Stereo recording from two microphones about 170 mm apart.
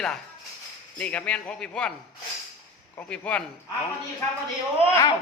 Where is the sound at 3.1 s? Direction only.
5° left (ahead or behind).